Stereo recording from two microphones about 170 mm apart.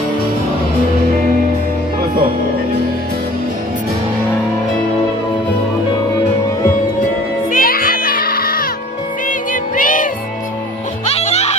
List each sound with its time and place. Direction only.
7.5 s music: 55° left (ahead or behind)
11.1 s music: 40° left (ahead or behind)